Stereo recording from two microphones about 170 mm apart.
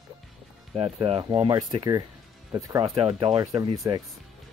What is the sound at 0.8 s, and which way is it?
Speech, 30° right (ahead or behind).